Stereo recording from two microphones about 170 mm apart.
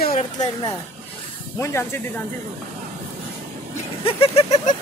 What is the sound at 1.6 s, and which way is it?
Speech, 15° left (ahead or behind).